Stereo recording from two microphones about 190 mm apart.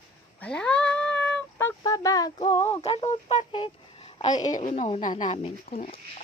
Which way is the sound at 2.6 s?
30° left (ahead or behind).